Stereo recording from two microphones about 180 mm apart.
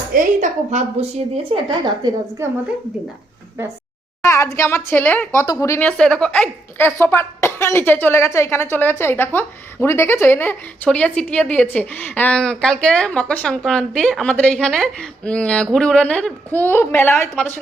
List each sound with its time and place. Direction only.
0.1 s a sound: 45° right (ahead or behind)
1.5 s a woman's voice: 25° right (ahead or behind)
4.2 s a woman's voice: 15° left (ahead or behind)